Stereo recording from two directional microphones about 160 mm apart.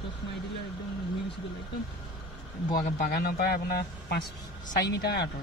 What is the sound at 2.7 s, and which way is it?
Speech, 65° left (ahead or behind).